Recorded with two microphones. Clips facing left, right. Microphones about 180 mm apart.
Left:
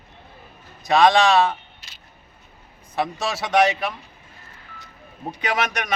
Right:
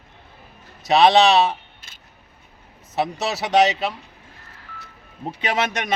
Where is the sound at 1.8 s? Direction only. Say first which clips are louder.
Even; 50° right (ahead or behind).